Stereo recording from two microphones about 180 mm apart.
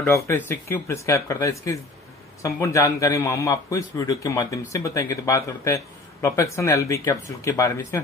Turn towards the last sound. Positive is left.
turn(degrees=15)  # may be behind; listen again after turning